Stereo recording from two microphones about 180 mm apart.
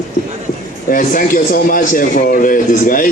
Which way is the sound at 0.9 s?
50° left (ahead or behind).